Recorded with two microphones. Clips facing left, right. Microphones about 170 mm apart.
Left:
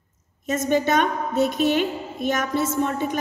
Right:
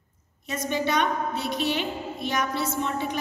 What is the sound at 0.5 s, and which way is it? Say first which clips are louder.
A woman's voice: left 6 dB; 45° left (ahead or behind).